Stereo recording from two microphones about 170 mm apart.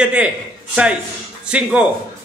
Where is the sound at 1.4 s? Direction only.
5° right (ahead or behind).